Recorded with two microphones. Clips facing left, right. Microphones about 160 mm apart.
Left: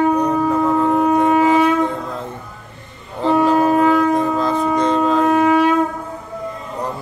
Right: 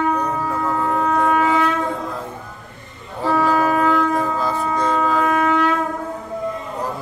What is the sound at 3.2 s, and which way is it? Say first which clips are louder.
Wind instrument: left 3 dB; 20° left (ahead or behind).